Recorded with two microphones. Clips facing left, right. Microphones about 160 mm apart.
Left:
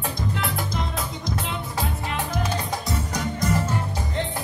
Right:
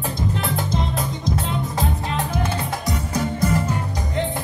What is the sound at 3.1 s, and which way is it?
Music, 5° right (ahead or behind).